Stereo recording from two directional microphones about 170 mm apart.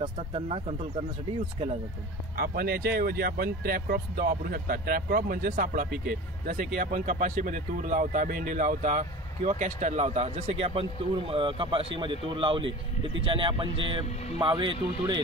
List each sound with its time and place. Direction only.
0.0 s speech: 35° right (ahead or behind)
2.3 s speech: 65° right (ahead or behind); by 15.1 s 25° right (ahead or behind)